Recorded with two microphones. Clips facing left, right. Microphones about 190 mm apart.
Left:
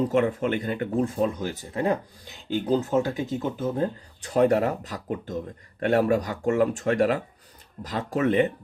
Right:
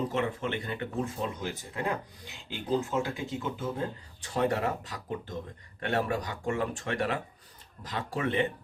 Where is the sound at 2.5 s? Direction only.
40° left (ahead or behind).